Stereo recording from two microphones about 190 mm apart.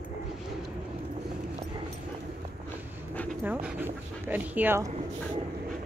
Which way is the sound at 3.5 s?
10° right (ahead or behind).